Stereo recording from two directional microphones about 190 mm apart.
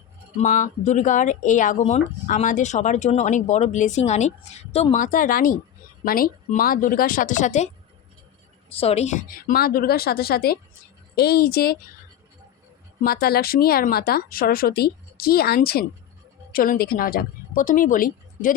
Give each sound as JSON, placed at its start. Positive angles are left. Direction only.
{"t": 0.3, "sound": "speech", "side_deg": 45}
{"t": 8.7, "sound": "speech", "side_deg": 30}
{"t": 13.0, "sound": "a woman's voice", "side_deg": 55}